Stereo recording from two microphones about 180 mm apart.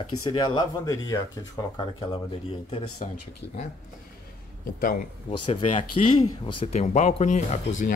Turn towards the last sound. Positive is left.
turn(degrees=40)  # may be behind; listen again after turning